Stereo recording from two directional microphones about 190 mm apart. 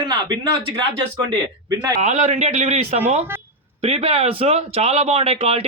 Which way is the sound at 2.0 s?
40° right (ahead or behind).